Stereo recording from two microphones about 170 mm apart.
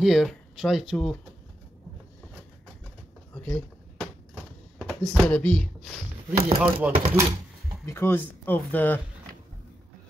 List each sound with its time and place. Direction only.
0.0 s speech: centre (ahead or behind)
3.4 s a sound: 5° left (ahead or behind)
4.7 s speech: 5° left (ahead or behind)
6.6 s speech: 10° right (ahead or behind)
7.8 s speech: 15° left (ahead or behind)